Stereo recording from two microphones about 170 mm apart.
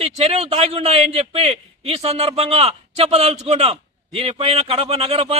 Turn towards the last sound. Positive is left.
turn(degrees=-35)  # may be behind; listen again after turning